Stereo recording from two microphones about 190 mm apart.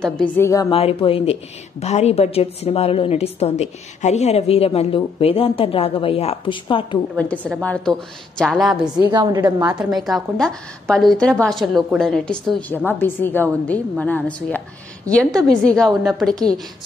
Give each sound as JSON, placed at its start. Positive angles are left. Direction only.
{"t": 0.0, "sound": "a woman's voice", "side_deg": 5}
{"t": 0.5, "sound": "a woman's voice", "side_deg": 20}
{"t": 0.7, "sound": "a woman's voice", "side_deg": 30}
{"t": 7.2, "sound": "a woman's voice", "side_deg": 5}
{"t": 9.0, "sound": "a woman's voice", "side_deg": -20}
{"t": 9.6, "sound": "a woman's voice", "side_deg": -5}